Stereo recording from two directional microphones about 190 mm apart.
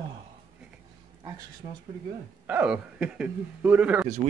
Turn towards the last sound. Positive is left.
turn(degrees=-5)  # may be behind; listen again after turning